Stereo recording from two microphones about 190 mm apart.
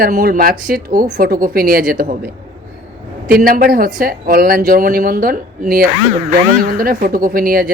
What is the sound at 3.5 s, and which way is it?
A woman's voice, 50° right (ahead or behind).